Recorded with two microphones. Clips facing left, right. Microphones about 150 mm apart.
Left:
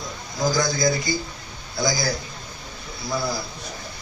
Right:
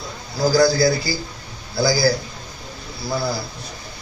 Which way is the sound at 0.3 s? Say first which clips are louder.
Right 7 dB; 35° right (ahead or behind).